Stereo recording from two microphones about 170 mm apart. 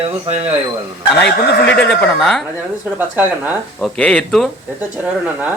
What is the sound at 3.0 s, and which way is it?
Speech, 10° right (ahead or behind).